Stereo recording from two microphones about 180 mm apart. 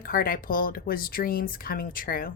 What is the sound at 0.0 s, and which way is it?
A woman's voice, 55° left (ahead or behind).